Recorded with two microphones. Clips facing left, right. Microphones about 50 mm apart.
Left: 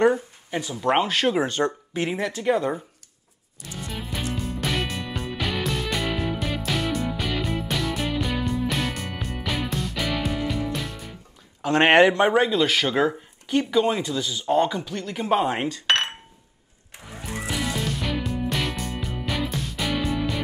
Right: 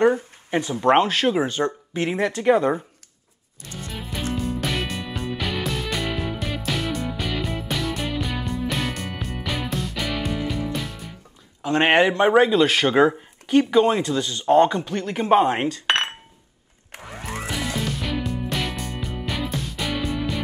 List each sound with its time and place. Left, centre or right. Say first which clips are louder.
0.1 s speech: right 3 dB; right
1.2 s a man's voice: right 1 dB; centre
3.8 s music: right 1 dB; centre
11.6 s speech: left 1 dB; left
12.0 s a man's voice: right 1 dB; centre
14.9 s speech: right 5 dB; centre
17.5 s music: even; centre